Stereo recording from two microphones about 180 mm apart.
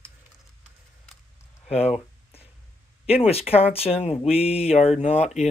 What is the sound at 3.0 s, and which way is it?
Speech, 35° left (ahead or behind).